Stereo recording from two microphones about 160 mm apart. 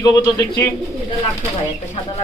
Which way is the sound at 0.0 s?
20° left (ahead or behind).